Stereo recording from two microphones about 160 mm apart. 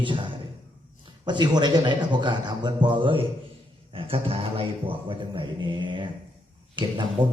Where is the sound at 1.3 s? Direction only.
25° right (ahead or behind).